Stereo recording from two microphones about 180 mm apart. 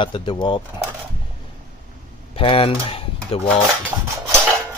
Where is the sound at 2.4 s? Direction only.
30° left (ahead or behind).